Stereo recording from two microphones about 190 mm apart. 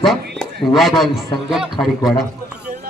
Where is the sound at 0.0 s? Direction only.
Centre (ahead or behind).